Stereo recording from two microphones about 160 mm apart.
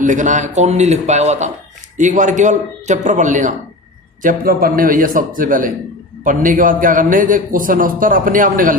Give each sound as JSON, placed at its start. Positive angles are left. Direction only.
{"t": 0.0, "sound": "a man's voice", "side_deg": -50}